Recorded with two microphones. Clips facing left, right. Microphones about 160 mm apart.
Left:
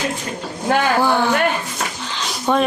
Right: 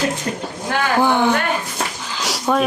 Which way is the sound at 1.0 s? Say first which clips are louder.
Right 1 dB; 20° right (ahead or behind).